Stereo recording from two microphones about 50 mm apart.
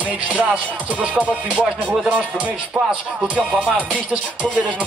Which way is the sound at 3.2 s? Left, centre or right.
Right.